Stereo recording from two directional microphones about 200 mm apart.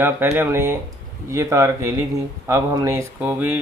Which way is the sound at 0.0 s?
10° right (ahead or behind).